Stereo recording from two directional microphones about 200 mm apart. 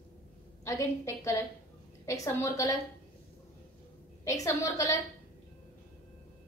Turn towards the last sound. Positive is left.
turn(degrees=15)  # may be behind; listen again after turning